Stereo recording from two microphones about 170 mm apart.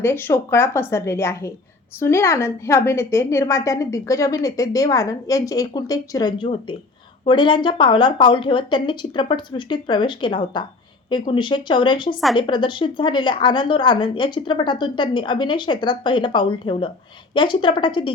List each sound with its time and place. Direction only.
0.0 s a woman's voice: 15° left (ahead or behind)